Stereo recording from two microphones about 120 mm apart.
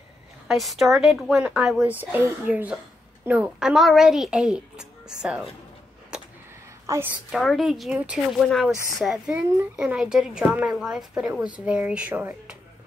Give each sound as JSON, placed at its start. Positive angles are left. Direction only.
{"t": 0.5, "sound": "a child's voice", "side_deg": 0}
{"t": 1.9, "sound": "a woman's voice", "side_deg": -15}
{"t": 6.1, "sound": "a sound", "side_deg": -10}
{"t": 6.9, "sound": "a woman's voice", "side_deg": -25}
{"t": 7.2, "sound": "a child's voice", "side_deg": 0}